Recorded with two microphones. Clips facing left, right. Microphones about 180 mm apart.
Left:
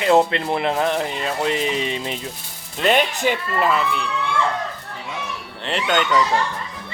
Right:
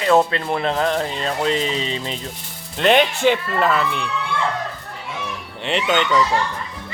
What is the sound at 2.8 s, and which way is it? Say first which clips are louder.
Speech: right 3 dB; centre (ahead or behind).